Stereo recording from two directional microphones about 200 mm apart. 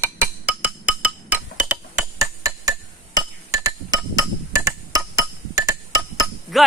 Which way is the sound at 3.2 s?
15° right (ahead or behind).